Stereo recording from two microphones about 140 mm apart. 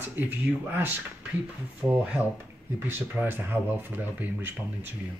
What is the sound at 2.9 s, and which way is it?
Speech, 15° right (ahead or behind).